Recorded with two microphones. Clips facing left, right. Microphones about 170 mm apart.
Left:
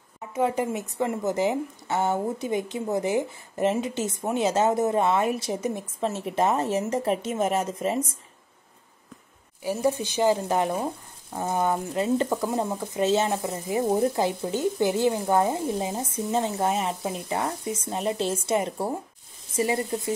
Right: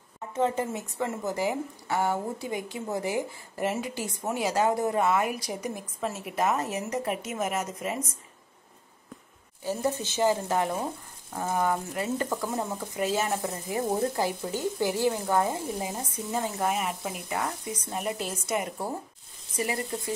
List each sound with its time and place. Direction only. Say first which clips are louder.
0.3 s speech: left 2 dB; 10° left (ahead or behind); by 8.1 s 30° left (ahead or behind)
9.6 s speech: left 4 dB; 15° left (ahead or behind)